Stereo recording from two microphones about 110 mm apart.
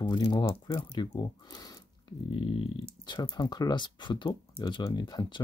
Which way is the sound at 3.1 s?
40° left (ahead or behind).